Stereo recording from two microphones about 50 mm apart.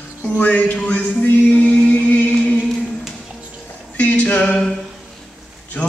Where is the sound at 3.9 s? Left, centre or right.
Left.